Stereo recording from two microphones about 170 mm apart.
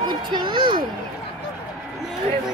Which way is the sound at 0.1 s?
25° right (ahead or behind).